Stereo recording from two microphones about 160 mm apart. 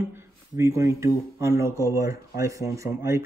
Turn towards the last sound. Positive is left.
turn(degrees=-15)  # may be behind; listen again after turning